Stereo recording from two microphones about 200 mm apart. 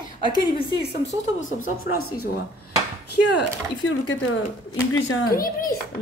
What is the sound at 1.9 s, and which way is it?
Speech, 90° left.